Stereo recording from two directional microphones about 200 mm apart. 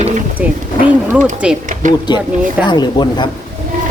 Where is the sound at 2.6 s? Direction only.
20° left (ahead or behind).